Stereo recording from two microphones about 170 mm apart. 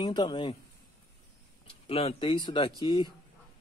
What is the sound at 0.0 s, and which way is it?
Speech, 25° left (ahead or behind).